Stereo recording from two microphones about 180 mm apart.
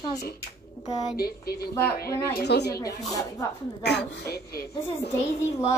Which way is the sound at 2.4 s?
65° left (ahead or behind).